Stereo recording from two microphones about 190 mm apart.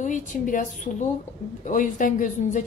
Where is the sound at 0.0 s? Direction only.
40° left (ahead or behind).